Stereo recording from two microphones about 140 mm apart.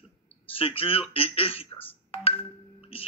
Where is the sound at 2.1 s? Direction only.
45° left (ahead or behind).